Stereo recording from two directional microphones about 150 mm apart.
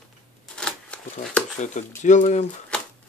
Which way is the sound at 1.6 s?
55° left (ahead or behind).